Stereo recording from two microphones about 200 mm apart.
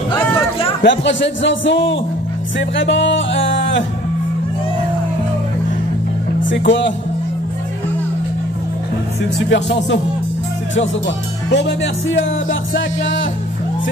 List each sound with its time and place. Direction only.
0.8 s a man's voice: 65° left (ahead or behind)
2.7 s music: 65° left (ahead or behind)
6.4 s speech: 65° left (ahead or behind)
9.5 s a man's voice: 60° left (ahead or behind)
11.5 s music: 60° left (ahead or behind)